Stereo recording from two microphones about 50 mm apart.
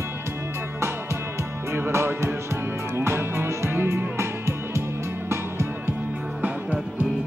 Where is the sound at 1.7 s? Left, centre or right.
Right.